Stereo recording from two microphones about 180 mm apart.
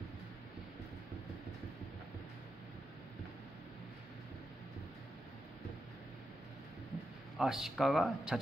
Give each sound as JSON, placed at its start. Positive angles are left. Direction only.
{"t": 7.3, "sound": "speech", "side_deg": 0}